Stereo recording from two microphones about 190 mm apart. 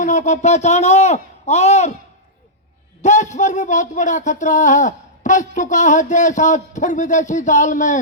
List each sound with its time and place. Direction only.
0.0 s speech: 40° left (ahead or behind)
3.0 s speech: 40° left (ahead or behind)